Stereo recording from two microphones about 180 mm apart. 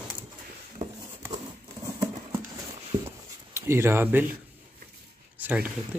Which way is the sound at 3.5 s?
15° right (ahead or behind).